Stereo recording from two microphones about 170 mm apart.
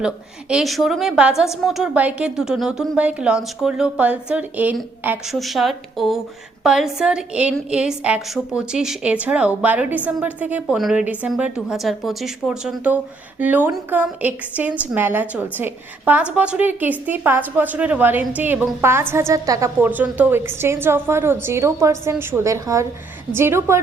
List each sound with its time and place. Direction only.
0.0 s a woman's voice: 5° right (ahead or behind)